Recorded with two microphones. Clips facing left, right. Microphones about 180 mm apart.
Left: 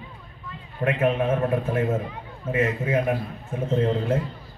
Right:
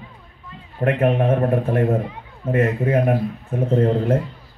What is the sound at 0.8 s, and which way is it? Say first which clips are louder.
A man's voice: right 4 dB; 55° right (ahead or behind).